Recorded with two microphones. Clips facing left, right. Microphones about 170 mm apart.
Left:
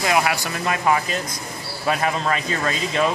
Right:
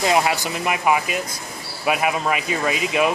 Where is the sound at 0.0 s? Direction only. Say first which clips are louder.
Right 1 dB; 25° right (ahead or behind).